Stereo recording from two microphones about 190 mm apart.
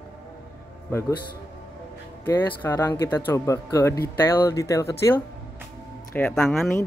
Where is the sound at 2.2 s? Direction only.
10° left (ahead or behind).